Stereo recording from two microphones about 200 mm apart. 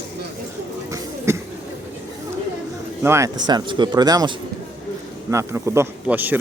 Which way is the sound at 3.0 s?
15° right (ahead or behind).